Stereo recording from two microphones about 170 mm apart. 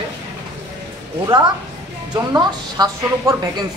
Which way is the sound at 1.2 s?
25° right (ahead or behind).